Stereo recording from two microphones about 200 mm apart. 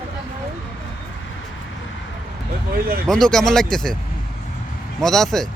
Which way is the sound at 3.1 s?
5° left (ahead or behind).